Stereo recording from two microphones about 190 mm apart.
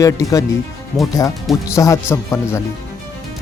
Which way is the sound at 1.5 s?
15° left (ahead or behind).